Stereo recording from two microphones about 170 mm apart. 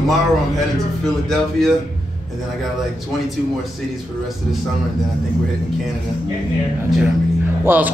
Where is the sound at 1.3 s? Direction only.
Centre (ahead or behind).